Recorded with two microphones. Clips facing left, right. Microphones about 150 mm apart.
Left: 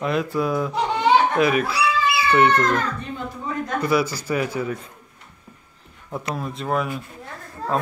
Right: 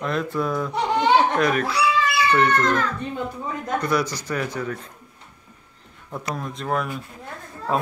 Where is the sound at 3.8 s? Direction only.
5° left (ahead or behind).